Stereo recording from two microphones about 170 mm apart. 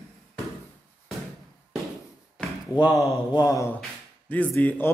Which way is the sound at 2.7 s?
20° left (ahead or behind).